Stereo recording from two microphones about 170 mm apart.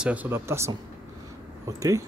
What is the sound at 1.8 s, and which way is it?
Speech, 20° right (ahead or behind).